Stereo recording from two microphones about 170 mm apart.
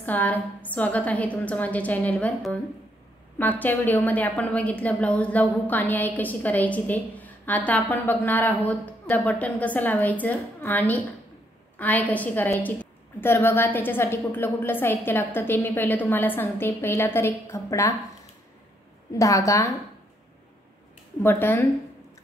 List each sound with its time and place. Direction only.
0.0 s a woman's voice: 10° left (ahead or behind)
19.1 s a woman's voice: 20° left (ahead or behind)
21.2 s a woman's voice: 10° left (ahead or behind)